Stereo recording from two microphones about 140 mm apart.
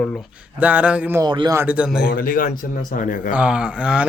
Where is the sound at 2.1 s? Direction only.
90° left; by 3.3 s 70° left (ahead or behind).